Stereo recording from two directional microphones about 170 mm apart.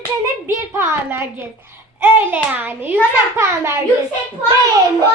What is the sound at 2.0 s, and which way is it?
Hands, 10° right (ahead or behind).